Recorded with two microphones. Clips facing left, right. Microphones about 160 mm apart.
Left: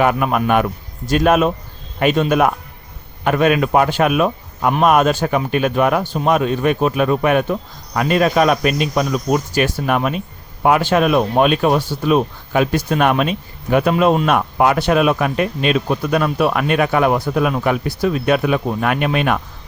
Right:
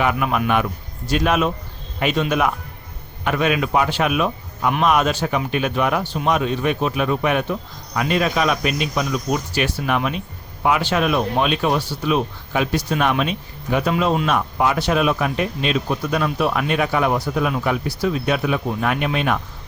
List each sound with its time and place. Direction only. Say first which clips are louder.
0.0 s speech: left 4 dB; 45° left (ahead or behind)
3.2 s speech: left 5 dB; 45° left (ahead or behind)